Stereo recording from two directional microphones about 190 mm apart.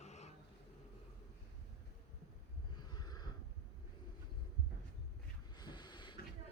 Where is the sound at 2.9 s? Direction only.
20° left (ahead or behind).